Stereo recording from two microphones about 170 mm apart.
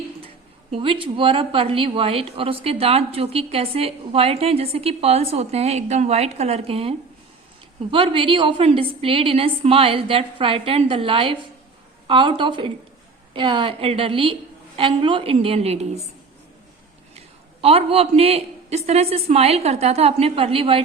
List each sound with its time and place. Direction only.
0.7 s a woman's voice: 30° right (ahead or behind)
17.2 s speech: 35° right (ahead or behind)